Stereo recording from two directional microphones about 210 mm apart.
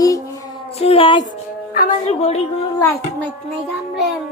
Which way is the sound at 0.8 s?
25° left (ahead or behind).